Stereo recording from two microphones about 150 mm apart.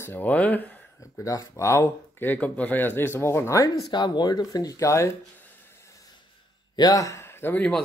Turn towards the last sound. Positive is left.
turn(degrees=10)  # may be behind; listen again after turning